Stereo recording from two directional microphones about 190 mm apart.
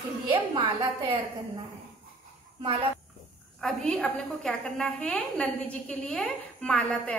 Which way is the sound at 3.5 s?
5° left (ahead or behind).